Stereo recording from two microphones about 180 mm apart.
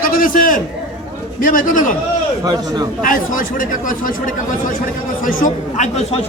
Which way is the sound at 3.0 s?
50° left (ahead or behind).